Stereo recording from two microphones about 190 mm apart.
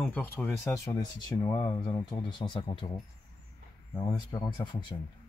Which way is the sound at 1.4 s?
25° left (ahead or behind).